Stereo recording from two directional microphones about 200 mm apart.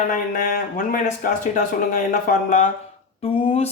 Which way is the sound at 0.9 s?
40° left (ahead or behind).